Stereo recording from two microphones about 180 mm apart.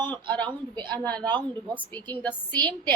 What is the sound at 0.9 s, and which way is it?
A woman's voice, 5° left (ahead or behind).